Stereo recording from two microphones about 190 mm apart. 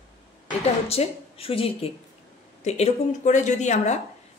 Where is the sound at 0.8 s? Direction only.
30° left (ahead or behind).